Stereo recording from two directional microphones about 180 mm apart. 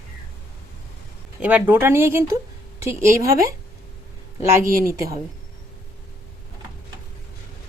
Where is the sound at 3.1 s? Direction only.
55° right (ahead or behind).